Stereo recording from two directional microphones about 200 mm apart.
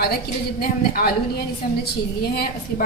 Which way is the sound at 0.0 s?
50° left (ahead or behind).